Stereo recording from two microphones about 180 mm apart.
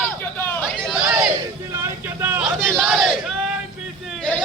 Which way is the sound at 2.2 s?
10° right (ahead or behind).